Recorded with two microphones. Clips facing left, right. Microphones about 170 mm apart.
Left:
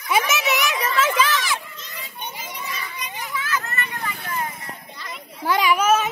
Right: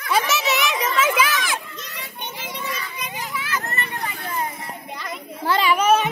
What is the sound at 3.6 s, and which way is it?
Vehicle, 35° right (ahead or behind).